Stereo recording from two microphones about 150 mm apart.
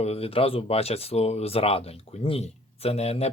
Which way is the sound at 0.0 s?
40° left (ahead or behind).